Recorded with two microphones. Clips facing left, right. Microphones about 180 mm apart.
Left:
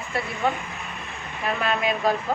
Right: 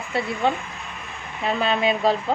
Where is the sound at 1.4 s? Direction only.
25° right (ahead or behind).